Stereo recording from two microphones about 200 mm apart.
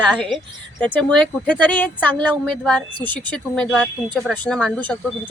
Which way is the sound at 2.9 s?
20° right (ahead or behind).